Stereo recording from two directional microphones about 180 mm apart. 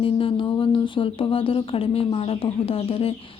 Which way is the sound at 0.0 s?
30° left (ahead or behind).